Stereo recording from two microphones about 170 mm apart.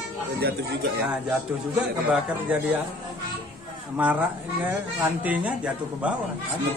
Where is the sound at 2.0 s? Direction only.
5° right (ahead or behind).